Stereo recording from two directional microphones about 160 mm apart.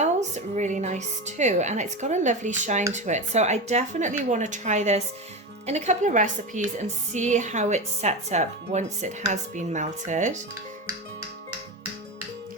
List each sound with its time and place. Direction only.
0.0 s a woman's voice: 45° right (ahead or behind)